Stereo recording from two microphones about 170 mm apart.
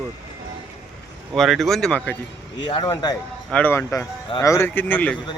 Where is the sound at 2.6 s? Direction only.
25° left (ahead or behind).